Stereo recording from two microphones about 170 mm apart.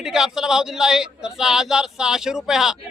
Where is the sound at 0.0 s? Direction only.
5° right (ahead or behind).